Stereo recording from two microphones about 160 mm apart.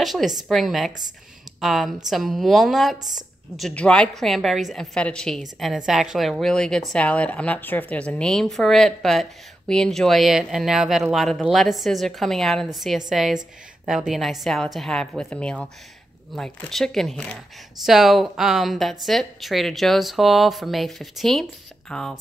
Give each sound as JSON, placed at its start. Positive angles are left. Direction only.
{"t": 0.0, "sound": "a woman's voice", "side_deg": 0}
{"t": 3.0, "sound": "speech", "side_deg": -25}
{"t": 3.5, "sound": "a woman's voice", "side_deg": 5}